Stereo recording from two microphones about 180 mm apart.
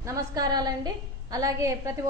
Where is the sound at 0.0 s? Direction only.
20° right (ahead or behind).